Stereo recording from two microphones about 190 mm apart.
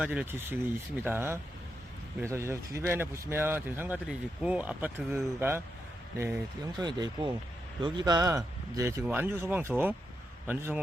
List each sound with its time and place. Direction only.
0.0 s speech: 5° right (ahead or behind)